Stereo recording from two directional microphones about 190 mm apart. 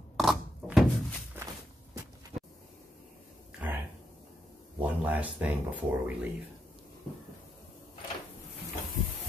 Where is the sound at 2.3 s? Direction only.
35° right (ahead or behind).